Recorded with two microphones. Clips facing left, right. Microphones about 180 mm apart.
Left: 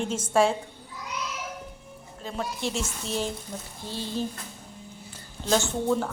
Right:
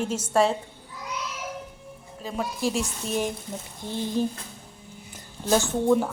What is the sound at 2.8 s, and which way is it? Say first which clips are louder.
Speech: right 3 dB; 15° right (ahead or behind).